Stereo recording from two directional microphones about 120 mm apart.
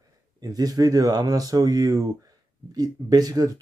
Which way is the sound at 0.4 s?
30° right (ahead or behind).